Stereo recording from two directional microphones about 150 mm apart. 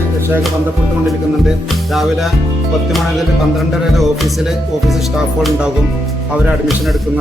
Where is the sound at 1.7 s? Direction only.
Centre (ahead or behind).